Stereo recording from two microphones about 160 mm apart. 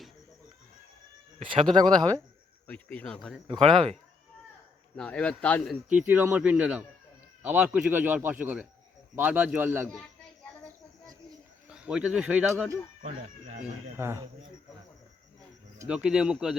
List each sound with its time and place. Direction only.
1.4 s speech: 35° right (ahead or behind)
2.6 s speech: 10° left (ahead or behind)
4.9 s a man's voice: 5° left (ahead or behind)
5.9 s a man's voice: 10° right (ahead or behind)
11.7 s speech: 5° right (ahead or behind)
13.0 s speech: 45° right (ahead or behind)
13.9 s a man's voice: 15° right (ahead or behind)
15.9 s a man's voice: 5° right (ahead or behind)